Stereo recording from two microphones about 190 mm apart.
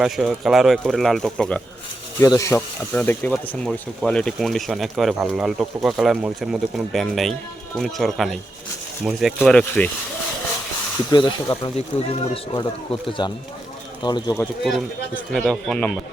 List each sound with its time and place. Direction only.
0.0 s speech: centre (ahead or behind)
2.1 s speech: 15° left (ahead or behind)
11.1 s speech: 20° left (ahead or behind)
14.6 s speech: centre (ahead or behind)